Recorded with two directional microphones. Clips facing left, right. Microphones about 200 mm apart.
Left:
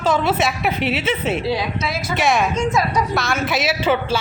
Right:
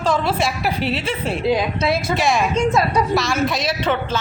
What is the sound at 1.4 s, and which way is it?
Speech, 15° right (ahead or behind).